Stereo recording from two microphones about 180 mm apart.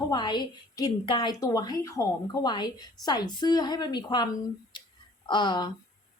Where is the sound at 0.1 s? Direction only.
25° left (ahead or behind).